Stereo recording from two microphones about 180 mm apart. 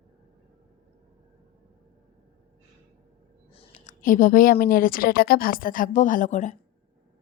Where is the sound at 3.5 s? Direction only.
30° left (ahead or behind).